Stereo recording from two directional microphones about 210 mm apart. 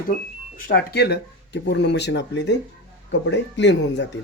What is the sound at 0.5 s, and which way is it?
Speech, 50° left (ahead or behind).